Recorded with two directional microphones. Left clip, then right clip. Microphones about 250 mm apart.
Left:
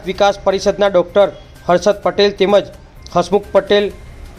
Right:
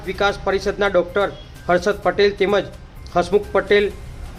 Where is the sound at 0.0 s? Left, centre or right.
Centre.